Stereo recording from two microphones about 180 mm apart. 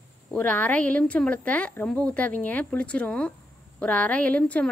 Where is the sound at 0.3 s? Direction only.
10° left (ahead or behind).